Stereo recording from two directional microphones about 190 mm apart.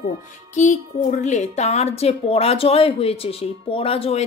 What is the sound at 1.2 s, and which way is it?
A woman's voice, 35° left (ahead or behind).